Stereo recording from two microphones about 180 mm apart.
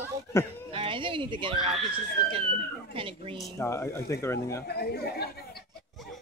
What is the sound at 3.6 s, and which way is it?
Speech, 15° left (ahead or behind).